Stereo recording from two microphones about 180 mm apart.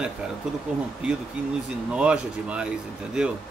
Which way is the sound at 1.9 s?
5° right (ahead or behind).